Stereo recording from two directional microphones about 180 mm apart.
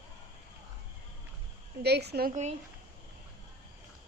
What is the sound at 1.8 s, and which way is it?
Speech, 65° right (ahead or behind).